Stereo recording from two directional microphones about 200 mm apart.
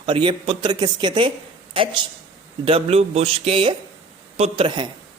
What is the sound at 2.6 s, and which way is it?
A man's voice, 30° right (ahead or behind).